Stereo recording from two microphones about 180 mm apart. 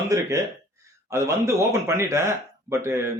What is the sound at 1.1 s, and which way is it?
Speech, 15° right (ahead or behind).